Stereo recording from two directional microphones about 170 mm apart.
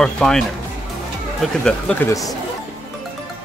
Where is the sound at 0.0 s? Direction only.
5° left (ahead or behind).